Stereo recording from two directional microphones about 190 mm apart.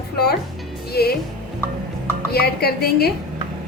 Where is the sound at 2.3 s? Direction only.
55° left (ahead or behind).